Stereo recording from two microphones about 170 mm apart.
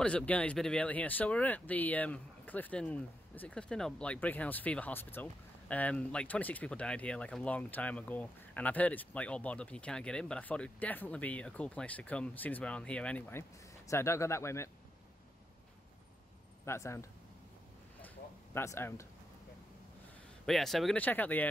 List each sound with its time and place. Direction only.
0.0 s speech: 5° left (ahead or behind)
16.6 s speech: 15° left (ahead or behind)
18.0 s a sound: 15° left (ahead or behind)
20.4 s speech: centre (ahead or behind)